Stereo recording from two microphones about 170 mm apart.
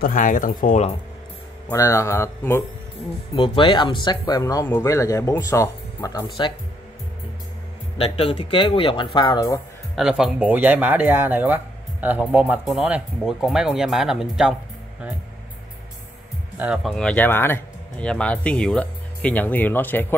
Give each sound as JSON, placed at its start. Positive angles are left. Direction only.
{"t": 0.0, "sound": "speech", "side_deg": 50}
{"t": 1.7, "sound": "speech", "side_deg": 15}
{"t": 3.3, "sound": "speech", "side_deg": 30}
{"t": 8.0, "sound": "speech", "side_deg": 35}
{"t": 9.9, "sound": "speech", "side_deg": -5}
{"t": 16.5, "sound": "speech", "side_deg": -5}